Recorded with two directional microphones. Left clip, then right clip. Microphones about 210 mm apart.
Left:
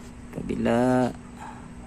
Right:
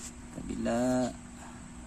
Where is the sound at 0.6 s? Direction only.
10° left (ahead or behind).